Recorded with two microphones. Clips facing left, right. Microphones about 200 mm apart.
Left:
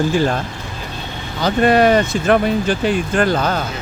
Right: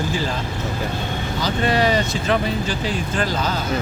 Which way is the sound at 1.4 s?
55° left (ahead or behind).